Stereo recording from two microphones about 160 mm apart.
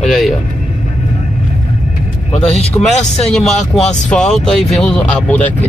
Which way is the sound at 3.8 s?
50° left (ahead or behind).